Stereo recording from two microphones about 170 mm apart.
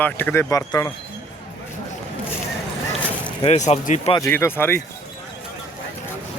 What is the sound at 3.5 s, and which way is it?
Speech, 45° left (ahead or behind).